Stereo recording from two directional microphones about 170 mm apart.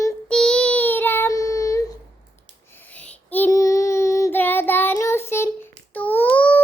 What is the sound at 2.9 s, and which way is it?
Child singing, 10° left (ahead or behind).